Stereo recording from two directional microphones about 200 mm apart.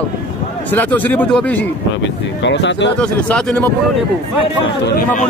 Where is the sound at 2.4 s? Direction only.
60° left (ahead or behind).